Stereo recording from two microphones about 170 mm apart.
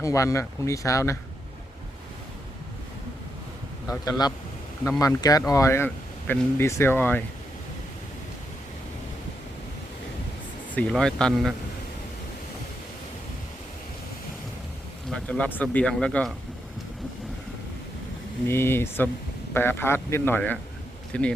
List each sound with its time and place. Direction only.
0.0 s speech: 20° left (ahead or behind)
4.9 s speech: 20° left (ahead or behind)
10.8 s speech: 5° left (ahead or behind)
15.1 s speech: 5° left (ahead or behind)
18.4 s speech: 15° left (ahead or behind)